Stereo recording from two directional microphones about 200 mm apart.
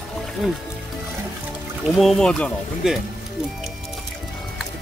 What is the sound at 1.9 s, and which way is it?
Speech, centre (ahead or behind).